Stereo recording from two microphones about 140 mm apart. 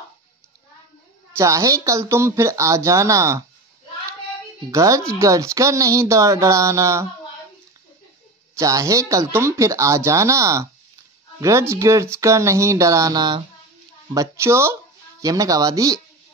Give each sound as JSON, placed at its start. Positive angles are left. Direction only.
{"t": 1.3, "sound": "speech", "side_deg": -20}
{"t": 4.6, "sound": "speech", "side_deg": -25}
{"t": 8.5, "sound": "speech", "side_deg": -25}